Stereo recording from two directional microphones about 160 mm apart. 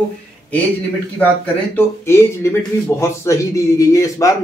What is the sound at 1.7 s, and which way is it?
A man's voice, 15° left (ahead or behind).